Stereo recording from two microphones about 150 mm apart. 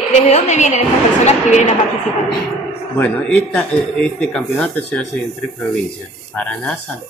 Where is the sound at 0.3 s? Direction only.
50° left (ahead or behind).